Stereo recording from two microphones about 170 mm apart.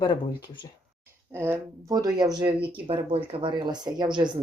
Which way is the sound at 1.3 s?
15° right (ahead or behind).